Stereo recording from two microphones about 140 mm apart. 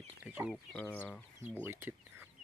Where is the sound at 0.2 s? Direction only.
5° right (ahead or behind).